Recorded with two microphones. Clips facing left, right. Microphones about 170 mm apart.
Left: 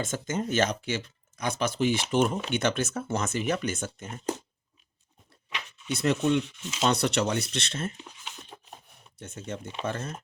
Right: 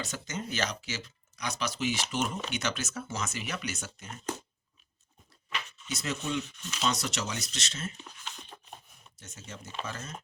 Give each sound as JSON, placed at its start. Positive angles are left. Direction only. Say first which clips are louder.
{"t": 0.0, "sound": "speech", "louder": "left 7 dB", "side_deg": 50}
{"t": 5.9, "sound": "speech", "louder": "left 9 dB", "side_deg": 60}
{"t": 8.0, "sound": "a sound", "louder": "left 1 dB", "side_deg": 10}
{"t": 9.1, "sound": "speech", "louder": "left 10 dB", "side_deg": 55}